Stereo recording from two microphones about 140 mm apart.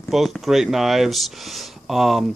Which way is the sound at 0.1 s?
Centre (ahead or behind).